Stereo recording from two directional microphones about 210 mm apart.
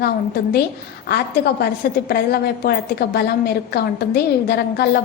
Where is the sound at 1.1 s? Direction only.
50° left (ahead or behind).